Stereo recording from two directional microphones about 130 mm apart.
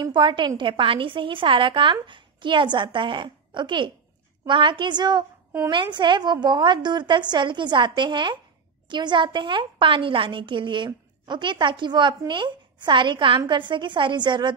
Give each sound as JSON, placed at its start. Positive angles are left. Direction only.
{"t": 0.0, "sound": "a woman's voice", "side_deg": -35}